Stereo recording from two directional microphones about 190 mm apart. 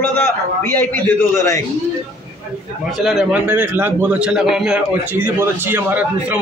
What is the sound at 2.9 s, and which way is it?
A man's voice, centre (ahead or behind).